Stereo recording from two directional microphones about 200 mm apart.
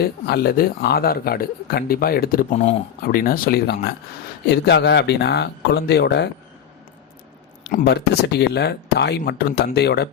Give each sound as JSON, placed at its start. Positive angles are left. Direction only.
{"t": 0.0, "sound": "speech", "side_deg": 50}
{"t": 7.7, "sound": "speech", "side_deg": 50}